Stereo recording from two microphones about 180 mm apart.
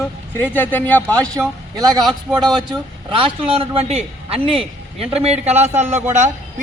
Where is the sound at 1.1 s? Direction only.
20° right (ahead or behind).